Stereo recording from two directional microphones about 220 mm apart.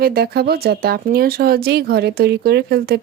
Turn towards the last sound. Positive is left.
turn(degrees=-45)  # may be behind; listen again after turning